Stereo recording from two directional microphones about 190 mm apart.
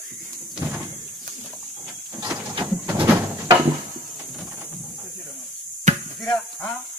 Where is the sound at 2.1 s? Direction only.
20° right (ahead or behind).